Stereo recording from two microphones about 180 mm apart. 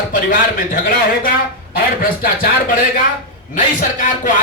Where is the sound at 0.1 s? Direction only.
50° left (ahead or behind).